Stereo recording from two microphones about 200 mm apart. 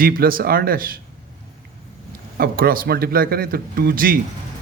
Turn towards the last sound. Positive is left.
turn(degrees=-50)  # may be behind; listen again after turning